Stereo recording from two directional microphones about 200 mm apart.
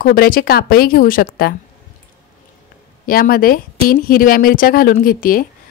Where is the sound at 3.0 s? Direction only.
45° left (ahead or behind).